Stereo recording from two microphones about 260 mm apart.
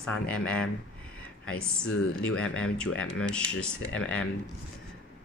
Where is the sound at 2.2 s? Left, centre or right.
Centre.